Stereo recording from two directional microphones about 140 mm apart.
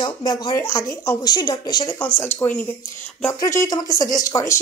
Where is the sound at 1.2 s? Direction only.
30° left (ahead or behind).